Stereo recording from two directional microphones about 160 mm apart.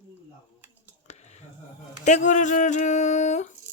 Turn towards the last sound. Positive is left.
turn(degrees=45)  # may be behind; listen again after turning